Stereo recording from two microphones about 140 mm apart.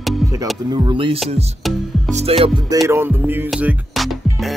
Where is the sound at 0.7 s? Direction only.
30° right (ahead or behind).